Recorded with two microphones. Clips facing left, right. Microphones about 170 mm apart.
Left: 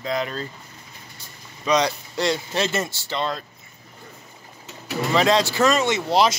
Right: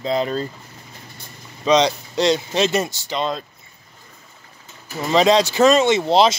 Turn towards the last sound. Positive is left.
turn(degrees=-25)  # may be behind; listen again after turning